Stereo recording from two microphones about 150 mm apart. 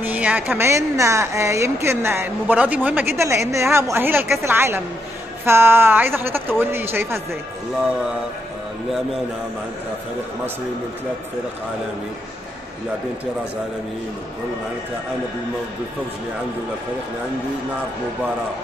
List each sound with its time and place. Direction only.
0.0 s a woman's voice: 10° right (ahead or behind)